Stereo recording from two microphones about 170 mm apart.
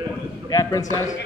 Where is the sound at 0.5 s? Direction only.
20° left (ahead or behind).